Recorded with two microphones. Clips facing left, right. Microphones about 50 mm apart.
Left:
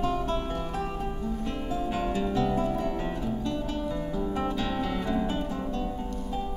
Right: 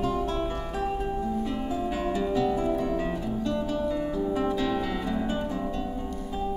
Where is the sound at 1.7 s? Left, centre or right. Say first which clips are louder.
Left 2 dB; centre.